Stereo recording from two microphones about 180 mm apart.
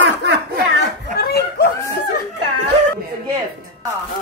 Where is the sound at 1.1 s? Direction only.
60° left (ahead or behind).